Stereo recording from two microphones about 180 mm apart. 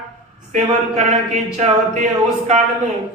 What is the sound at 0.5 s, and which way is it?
Speech, 40° right (ahead or behind).